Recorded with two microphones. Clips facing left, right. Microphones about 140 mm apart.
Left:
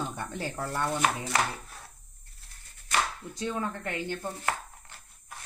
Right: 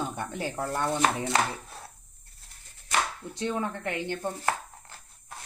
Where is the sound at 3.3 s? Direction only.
25° right (ahead or behind).